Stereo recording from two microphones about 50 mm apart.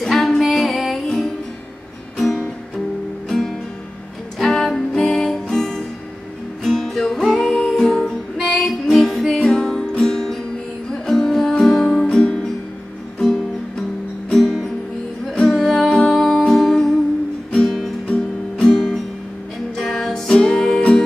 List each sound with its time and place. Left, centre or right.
0.0 s female singing: centre
2.1 s music: centre
8.4 s music: centre
12.1 s music: centre
14.3 s music: centre